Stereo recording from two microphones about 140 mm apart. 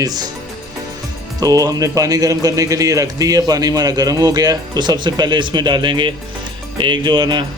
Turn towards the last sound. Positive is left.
turn(degrees=-35)  # may be behind; listen again after turning